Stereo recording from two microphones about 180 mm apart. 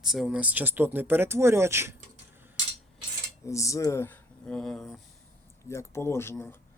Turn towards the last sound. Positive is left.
turn(degrees=15)  # may be behind; listen again after turning